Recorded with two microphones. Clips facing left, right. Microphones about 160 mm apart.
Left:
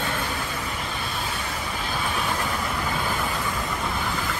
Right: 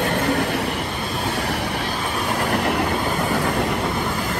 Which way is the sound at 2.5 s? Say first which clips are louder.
Right 7 dB; 70° right (ahead or behind).